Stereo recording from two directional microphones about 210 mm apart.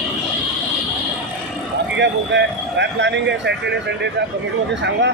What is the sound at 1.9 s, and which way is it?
A man's voice, 55° right (ahead or behind).